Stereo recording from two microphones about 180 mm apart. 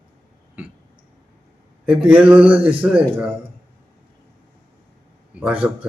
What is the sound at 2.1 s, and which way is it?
A man's voice, 5° right (ahead or behind).